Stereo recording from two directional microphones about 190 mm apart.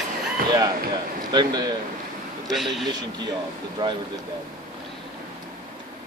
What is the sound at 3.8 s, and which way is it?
Speech, 25° right (ahead or behind).